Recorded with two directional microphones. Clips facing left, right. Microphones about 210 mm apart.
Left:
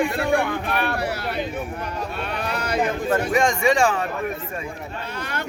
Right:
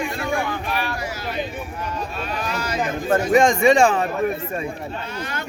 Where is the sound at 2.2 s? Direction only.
60° left (ahead or behind).